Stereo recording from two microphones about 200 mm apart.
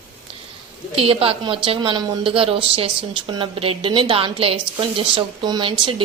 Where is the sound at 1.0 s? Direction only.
30° right (ahead or behind).